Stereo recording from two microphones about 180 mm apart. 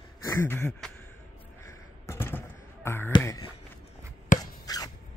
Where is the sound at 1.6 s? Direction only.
15° left (ahead or behind).